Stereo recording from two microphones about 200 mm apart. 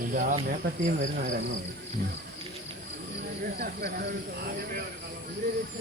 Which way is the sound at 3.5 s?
50° right (ahead or behind).